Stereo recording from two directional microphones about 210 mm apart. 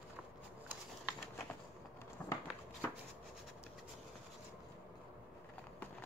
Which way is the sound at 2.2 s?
15° left (ahead or behind).